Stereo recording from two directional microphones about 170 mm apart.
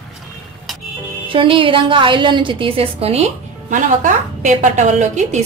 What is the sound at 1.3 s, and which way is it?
A woman's voice, 30° right (ahead or behind).